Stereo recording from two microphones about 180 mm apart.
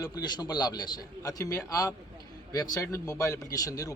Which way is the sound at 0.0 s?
20° left (ahead or behind).